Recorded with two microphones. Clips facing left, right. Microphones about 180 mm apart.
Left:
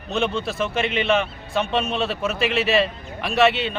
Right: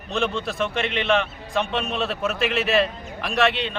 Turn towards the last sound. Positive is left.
turn(degrees=5)  # may be behind; listen again after turning